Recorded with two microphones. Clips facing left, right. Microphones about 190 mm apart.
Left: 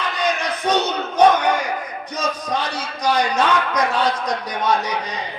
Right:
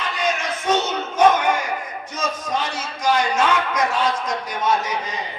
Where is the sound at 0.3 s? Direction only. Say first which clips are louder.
Left 1 dB; 35° left (ahead or behind).